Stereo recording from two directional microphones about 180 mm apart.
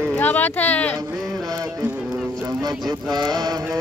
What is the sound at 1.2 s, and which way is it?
Music, centre (ahead or behind).